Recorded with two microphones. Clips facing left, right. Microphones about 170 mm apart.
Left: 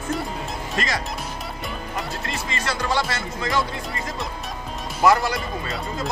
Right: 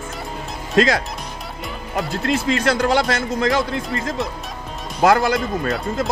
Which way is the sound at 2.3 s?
75° right (ahead or behind).